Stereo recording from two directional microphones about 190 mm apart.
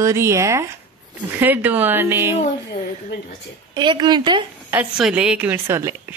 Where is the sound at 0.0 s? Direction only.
15° right (ahead or behind).